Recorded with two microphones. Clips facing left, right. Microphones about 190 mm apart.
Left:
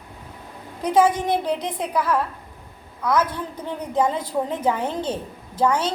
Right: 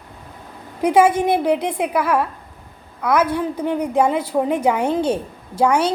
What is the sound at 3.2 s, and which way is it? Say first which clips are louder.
Speech: right 6 dB; 10° right (ahead or behind).